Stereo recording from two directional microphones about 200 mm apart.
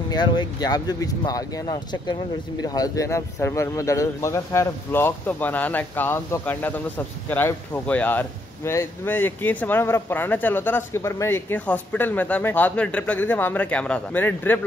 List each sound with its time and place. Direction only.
0.1 s a man's voice: 20° left (ahead or behind)